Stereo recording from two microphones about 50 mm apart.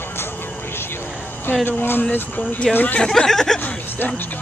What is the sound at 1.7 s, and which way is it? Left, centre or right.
Speech, left.